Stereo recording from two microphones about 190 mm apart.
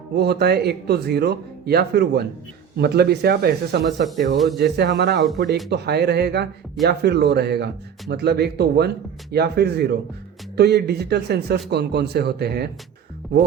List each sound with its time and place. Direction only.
0.2 s speech: 60° right (ahead or behind)